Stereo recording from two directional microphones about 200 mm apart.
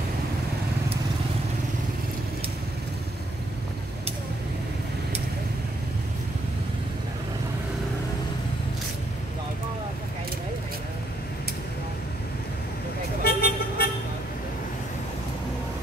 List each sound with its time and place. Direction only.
13.2 s vehicle: 50° left (ahead or behind)